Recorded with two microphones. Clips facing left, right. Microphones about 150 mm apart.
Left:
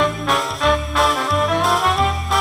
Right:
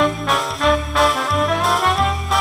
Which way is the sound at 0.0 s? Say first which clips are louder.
Right 1 dB; centre (ahead or behind).